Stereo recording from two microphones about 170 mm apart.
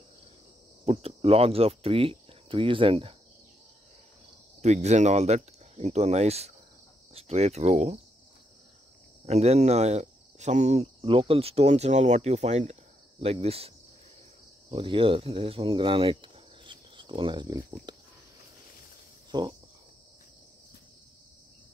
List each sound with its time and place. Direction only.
0.8 s cricket: 35° right (ahead or behind)
4.6 s cricket: 40° right (ahead or behind)
9.2 s cricket: 40° right (ahead or behind)
14.7 s speech: 30° right (ahead or behind)
19.3 s a sound: 25° right (ahead or behind)